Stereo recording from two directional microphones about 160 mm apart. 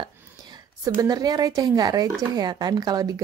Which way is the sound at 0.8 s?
20° right (ahead or behind).